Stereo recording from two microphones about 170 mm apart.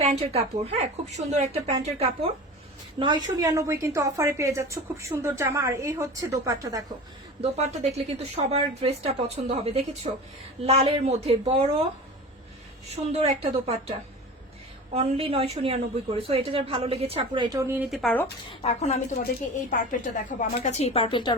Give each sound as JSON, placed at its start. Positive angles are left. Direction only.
{"t": 0.3, "sound": "a woman's voice", "side_deg": -35}
{"t": 3.0, "sound": "a woman's voice", "side_deg": -25}
{"t": 7.4, "sound": "a woman's voice", "side_deg": -35}
{"t": 13.1, "sound": "a woman's voice", "side_deg": -40}
{"t": 14.9, "sound": "a woman's voice", "side_deg": -35}
{"t": 17.8, "sound": "speech", "side_deg": 0}
{"t": 18.6, "sound": "a woman's voice", "side_deg": 40}